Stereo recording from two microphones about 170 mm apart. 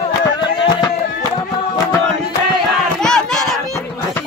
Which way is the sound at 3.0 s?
5° left (ahead or behind).